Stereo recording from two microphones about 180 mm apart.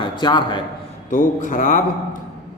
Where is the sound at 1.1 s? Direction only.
45° left (ahead or behind).